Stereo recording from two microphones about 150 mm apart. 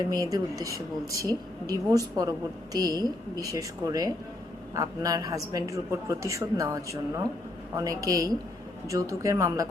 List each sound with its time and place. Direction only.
0.0 s a man's voice: 25° right (ahead or behind)